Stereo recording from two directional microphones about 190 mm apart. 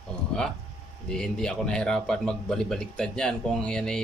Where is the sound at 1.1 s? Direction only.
5° left (ahead or behind).